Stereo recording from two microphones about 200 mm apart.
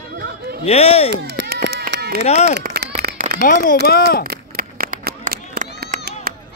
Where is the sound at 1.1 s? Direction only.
55° right (ahead or behind).